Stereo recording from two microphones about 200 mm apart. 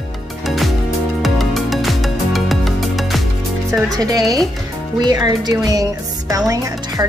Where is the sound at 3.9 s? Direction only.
20° right (ahead or behind).